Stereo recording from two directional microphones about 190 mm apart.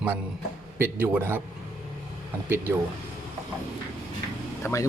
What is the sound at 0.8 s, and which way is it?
Speech, 10° right (ahead or behind).